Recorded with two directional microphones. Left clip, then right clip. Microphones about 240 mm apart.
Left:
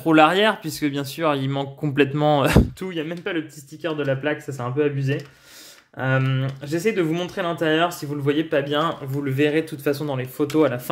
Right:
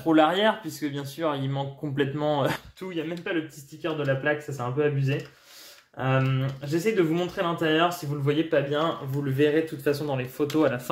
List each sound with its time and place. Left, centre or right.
0.0 s speech: left